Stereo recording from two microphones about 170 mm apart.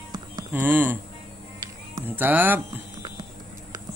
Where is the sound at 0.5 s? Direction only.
10° right (ahead or behind).